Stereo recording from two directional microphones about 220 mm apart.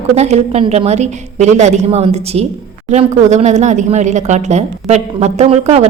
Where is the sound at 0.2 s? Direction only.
30° right (ahead or behind).